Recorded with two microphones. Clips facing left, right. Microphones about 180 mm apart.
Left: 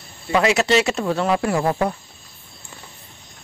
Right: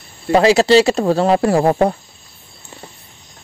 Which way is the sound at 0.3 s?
30° right (ahead or behind).